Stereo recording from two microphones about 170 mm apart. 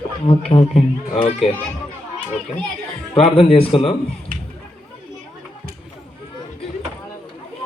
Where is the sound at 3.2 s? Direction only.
35° left (ahead or behind).